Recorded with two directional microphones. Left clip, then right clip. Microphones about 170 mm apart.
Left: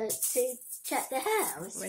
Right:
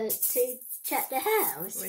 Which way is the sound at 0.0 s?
15° right (ahead or behind).